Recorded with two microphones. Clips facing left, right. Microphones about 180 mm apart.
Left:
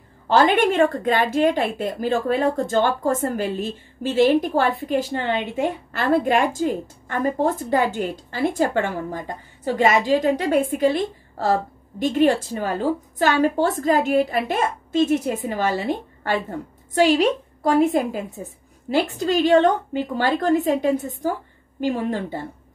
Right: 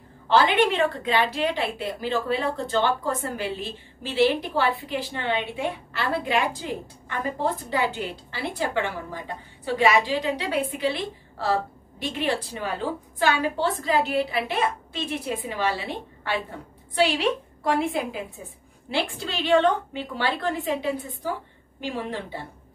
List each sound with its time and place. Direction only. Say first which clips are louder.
0.3 s a woman's voice: left 3 dB; 45° left (ahead or behind)